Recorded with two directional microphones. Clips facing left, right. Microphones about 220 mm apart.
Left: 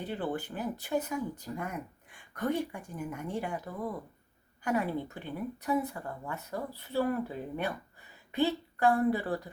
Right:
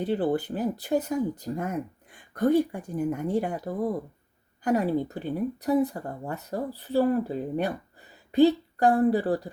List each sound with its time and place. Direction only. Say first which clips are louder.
0.0 s a woman's voice: right 9 dB; 35° right (ahead or behind)